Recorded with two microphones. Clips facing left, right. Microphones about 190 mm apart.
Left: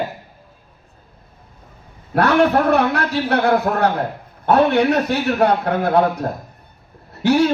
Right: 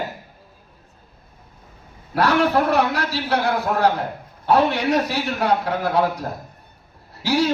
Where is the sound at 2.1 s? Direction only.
55° left (ahead or behind).